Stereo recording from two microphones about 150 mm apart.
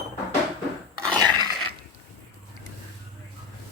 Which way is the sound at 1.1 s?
30° right (ahead or behind).